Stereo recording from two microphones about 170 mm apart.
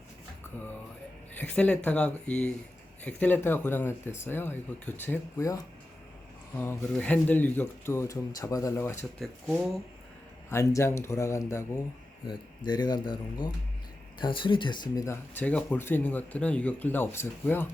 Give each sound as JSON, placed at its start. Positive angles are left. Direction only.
{"t": 1.4, "sound": "speech", "side_deg": 5}
{"t": 6.6, "sound": "speech", "side_deg": 10}
{"t": 9.1, "sound": "speech", "side_deg": 0}
{"t": 10.5, "sound": "speech", "side_deg": 15}